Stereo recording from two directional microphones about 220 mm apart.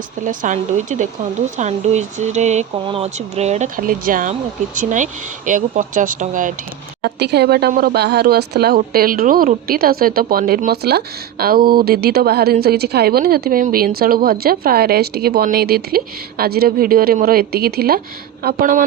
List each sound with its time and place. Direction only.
0.3 s speech: 35° right (ahead or behind)
7.0 s speech: 50° right (ahead or behind)